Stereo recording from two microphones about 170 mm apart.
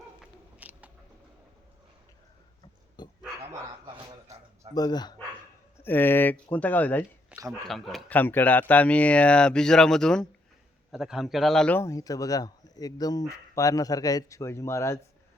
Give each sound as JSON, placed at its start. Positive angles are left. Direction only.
{"t": 0.6, "sound": "a sound", "side_deg": -10}
{"t": 3.0, "sound": "bow-wow", "side_deg": 25}
{"t": 4.7, "sound": "a man's voice", "side_deg": 25}
{"t": 5.7, "sound": "speech", "side_deg": 10}
{"t": 7.3, "sound": "a man's voice", "side_deg": -5}